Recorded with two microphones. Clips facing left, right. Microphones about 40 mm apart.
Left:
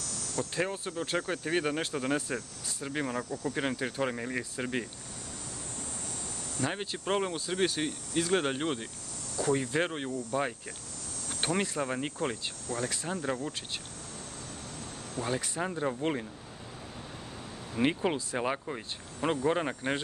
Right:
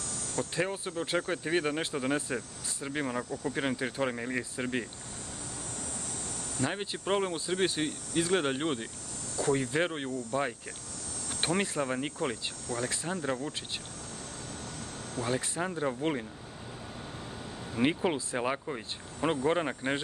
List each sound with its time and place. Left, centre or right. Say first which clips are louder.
0.6 s speech: even; centre
6.6 s speech: even; centre
11.2 s speech: even; centre
15.2 s speech: right 1 dB; left
15.5 s speech: even; centre
17.7 s speech: even; centre